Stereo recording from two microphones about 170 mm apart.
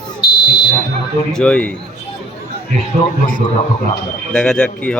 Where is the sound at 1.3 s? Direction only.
5° left (ahead or behind).